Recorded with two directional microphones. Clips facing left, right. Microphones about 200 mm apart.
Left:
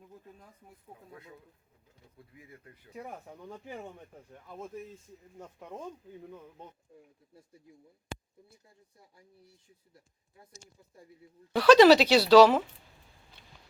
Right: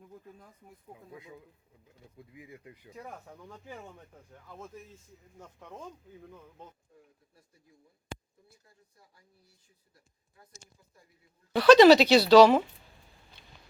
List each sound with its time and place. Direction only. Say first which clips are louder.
1.1 s speech: right 3 dB; 10° right (ahead or behind)
2.9 s speech: left 3 dB; 20° left (ahead or behind)
8.4 s speech: left 2 dB; 25° left (ahead or behind)
11.5 s speech: right 1 dB; 5° left (ahead or behind)